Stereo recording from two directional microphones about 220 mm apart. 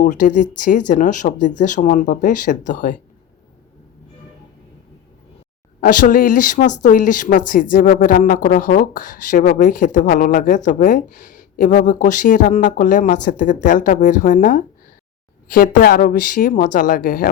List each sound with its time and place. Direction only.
0.0 s speech: 35° left (ahead or behind)
5.8 s speech: 40° left (ahead or behind)